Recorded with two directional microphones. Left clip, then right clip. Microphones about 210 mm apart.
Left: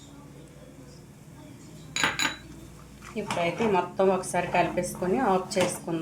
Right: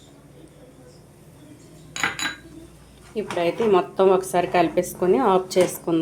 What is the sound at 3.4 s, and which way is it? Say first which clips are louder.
Speech: right 6 dB; 40° right (ahead or behind).